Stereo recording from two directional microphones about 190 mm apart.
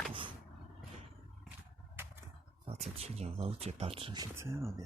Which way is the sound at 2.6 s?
35° right (ahead or behind).